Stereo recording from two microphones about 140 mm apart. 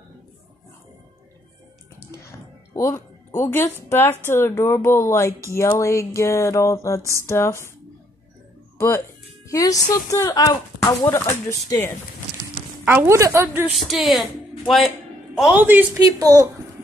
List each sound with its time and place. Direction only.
2.7 s speech: 20° left (ahead or behind)
8.7 s speech: 20° left (ahead or behind)
12.8 s a woman's voice: 15° right (ahead or behind)
13.7 s speech: centre (ahead or behind)
15.5 s a woman's voice: 10° right (ahead or behind)
16.0 s a woman's voice: 25° right (ahead or behind)